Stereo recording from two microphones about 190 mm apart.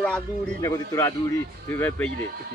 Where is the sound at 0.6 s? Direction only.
15° left (ahead or behind).